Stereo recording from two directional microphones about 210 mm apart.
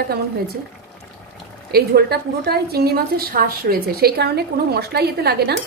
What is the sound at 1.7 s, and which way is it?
A woman's voice, 50° right (ahead or behind).